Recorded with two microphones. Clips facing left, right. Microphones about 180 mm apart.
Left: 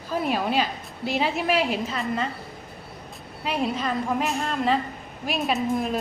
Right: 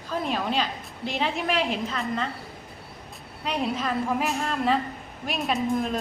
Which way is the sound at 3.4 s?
Centre (ahead or behind).